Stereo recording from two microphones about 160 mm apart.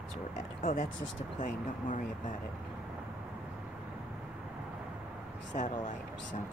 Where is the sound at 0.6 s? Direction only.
60° left (ahead or behind).